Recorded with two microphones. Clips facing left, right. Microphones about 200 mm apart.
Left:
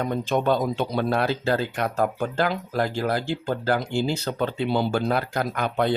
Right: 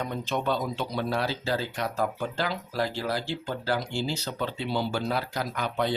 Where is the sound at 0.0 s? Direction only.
50° left (ahead or behind).